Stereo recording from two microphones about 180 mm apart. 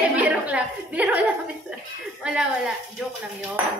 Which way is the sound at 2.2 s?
5° right (ahead or behind).